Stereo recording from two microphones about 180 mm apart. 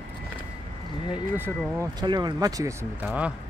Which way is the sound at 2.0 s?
25° right (ahead or behind).